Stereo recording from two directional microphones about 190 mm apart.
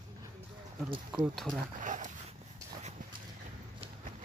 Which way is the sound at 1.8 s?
40° right (ahead or behind).